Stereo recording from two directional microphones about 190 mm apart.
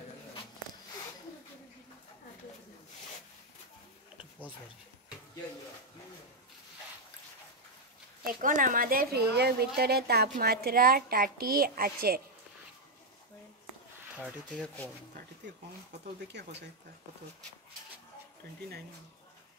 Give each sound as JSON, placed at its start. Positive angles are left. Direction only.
{"t": 8.3, "sound": "a woman's voice", "side_deg": -45}
{"t": 14.5, "sound": "speech", "side_deg": 5}
{"t": 16.3, "sound": "speech", "side_deg": -65}